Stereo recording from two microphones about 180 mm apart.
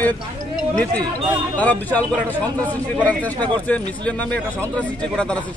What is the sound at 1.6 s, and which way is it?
Speech, 10° left (ahead or behind).